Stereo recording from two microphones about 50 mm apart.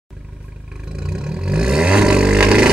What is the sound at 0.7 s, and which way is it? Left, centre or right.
Vehicle, centre.